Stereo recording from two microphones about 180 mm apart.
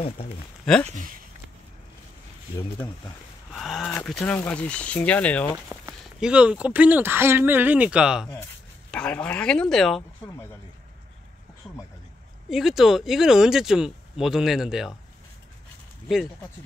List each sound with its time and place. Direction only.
0.8 s speech: 45° right (ahead or behind)
3.5 s speech: centre (ahead or behind)
6.1 s speech: 5° right (ahead or behind)
8.9 s speech: 5° left (ahead or behind)
12.4 s speech: centre (ahead or behind)